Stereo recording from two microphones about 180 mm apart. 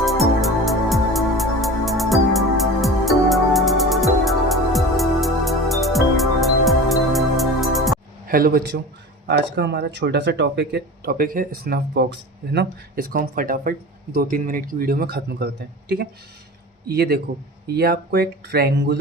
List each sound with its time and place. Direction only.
0.0 s music: centre (ahead or behind)
8.3 s speech: 55° right (ahead or behind)
9.2 s speech: 70° right (ahead or behind)
16.9 s speech: 60° right (ahead or behind)